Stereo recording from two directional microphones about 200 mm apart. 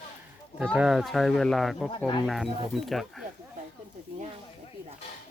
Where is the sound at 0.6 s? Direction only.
Centre (ahead or behind).